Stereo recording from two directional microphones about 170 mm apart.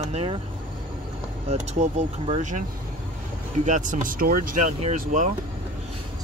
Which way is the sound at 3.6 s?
50° right (ahead or behind).